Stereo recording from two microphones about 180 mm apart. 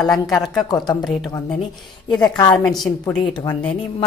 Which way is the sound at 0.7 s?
25° left (ahead or behind).